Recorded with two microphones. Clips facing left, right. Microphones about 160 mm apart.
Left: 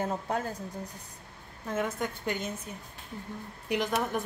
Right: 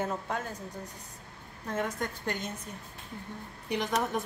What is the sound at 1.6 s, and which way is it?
A woman's voice, 5° left (ahead or behind).